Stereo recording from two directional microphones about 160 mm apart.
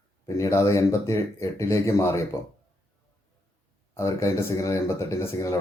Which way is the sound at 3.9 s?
15° left (ahead or behind).